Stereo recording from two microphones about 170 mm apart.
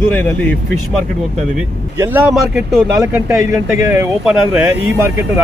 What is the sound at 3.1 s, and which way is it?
Speech, 10° right (ahead or behind).